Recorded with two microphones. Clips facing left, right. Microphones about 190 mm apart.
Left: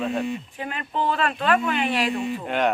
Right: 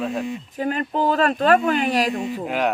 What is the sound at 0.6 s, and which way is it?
Speech, 40° right (ahead or behind).